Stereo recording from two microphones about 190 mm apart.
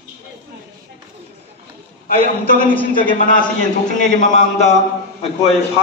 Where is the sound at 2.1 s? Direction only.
50° left (ahead or behind).